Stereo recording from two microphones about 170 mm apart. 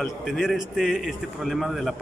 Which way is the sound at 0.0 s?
Centre (ahead or behind).